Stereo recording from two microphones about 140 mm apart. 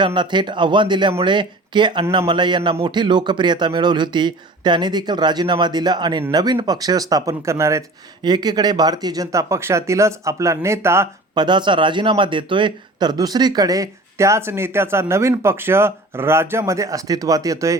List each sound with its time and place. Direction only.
0.0 s a man's voice: 35° right (ahead or behind); by 11.1 s 20° right (ahead or behind)
11.3 s a man's voice: 35° right (ahead or behind)